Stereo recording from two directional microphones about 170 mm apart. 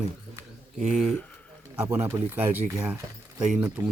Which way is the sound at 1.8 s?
15° right (ahead or behind).